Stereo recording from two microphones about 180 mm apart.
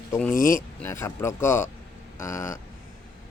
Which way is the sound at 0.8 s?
15° left (ahead or behind).